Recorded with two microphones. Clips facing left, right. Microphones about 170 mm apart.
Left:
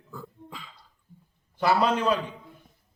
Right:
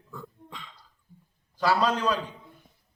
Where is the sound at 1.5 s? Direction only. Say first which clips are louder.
Left 1 dB; 20° left (ahead or behind).